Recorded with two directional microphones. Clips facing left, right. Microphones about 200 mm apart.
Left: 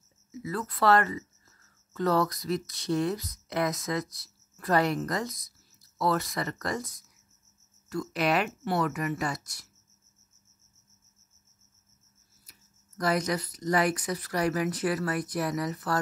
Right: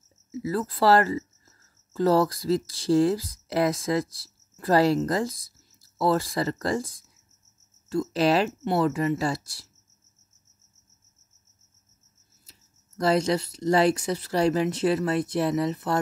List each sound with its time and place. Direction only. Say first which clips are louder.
0.3 s speech: right 6 dB; 30° right (ahead or behind)
12.4 s speech: right 3 dB; 25° right (ahead or behind)